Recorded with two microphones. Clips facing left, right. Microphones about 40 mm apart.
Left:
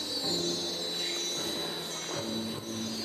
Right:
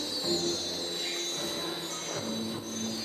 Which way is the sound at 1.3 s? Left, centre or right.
Left.